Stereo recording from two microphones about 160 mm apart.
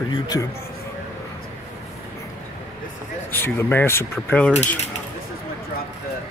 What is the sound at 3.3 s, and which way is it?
Speech, 15° left (ahead or behind).